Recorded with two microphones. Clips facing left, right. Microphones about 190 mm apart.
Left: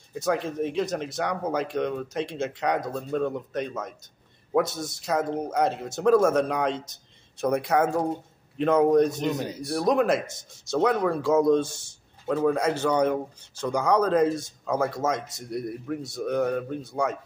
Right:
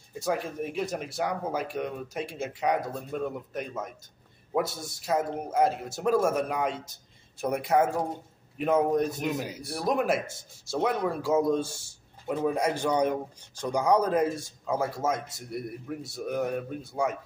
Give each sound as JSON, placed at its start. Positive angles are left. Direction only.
{"t": 0.1, "sound": "a man's voice", "side_deg": -5}
{"t": 15.1, "sound": "speech", "side_deg": 90}
{"t": 15.5, "sound": "a man's voice", "side_deg": -5}